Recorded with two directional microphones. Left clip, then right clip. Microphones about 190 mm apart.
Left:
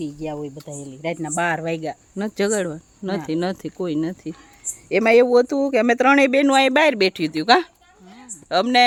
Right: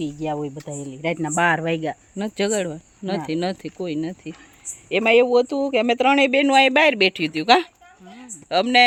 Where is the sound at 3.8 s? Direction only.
15° left (ahead or behind).